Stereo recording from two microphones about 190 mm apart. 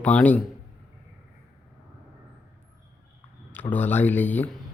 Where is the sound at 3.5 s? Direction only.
10° left (ahead or behind).